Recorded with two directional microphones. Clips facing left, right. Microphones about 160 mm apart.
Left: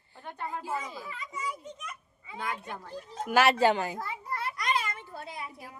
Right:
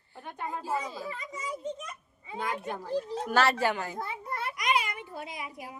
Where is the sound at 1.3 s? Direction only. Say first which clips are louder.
Right 2 dB; 30° right (ahead or behind).